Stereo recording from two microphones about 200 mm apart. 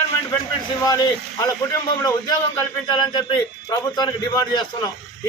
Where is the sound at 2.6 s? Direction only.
20° left (ahead or behind).